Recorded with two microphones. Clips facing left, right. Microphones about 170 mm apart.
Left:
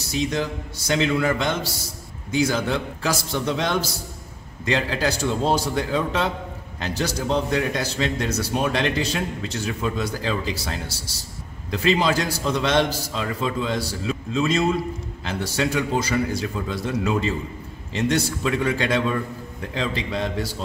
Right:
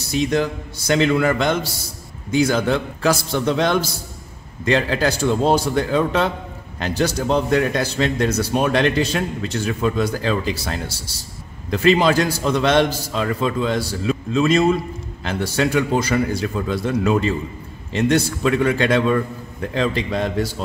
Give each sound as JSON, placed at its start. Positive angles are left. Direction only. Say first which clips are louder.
{"t": 0.1, "sound": "a man's voice", "louder": "right 5 dB", "side_deg": -55}